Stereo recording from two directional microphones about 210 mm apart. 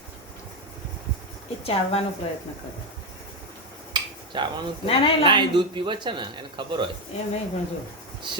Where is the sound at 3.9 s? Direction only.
20° right (ahead or behind).